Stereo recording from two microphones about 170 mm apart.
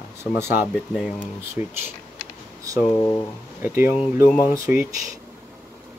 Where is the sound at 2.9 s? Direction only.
20° left (ahead or behind).